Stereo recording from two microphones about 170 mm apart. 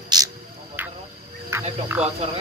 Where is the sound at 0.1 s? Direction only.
25° right (ahead or behind).